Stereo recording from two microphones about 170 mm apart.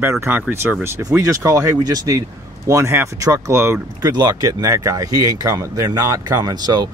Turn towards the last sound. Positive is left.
turn(degrees=-25)  # may be behind; listen again after turning